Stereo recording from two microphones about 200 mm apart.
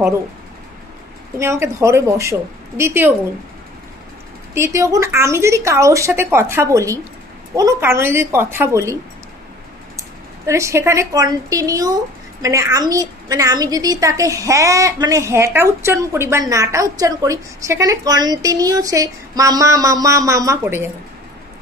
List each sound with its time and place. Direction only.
1.4 s speech: 15° right (ahead or behind)
4.6 s speech: 15° right (ahead or behind)
9.9 s speech: 15° right (ahead or behind)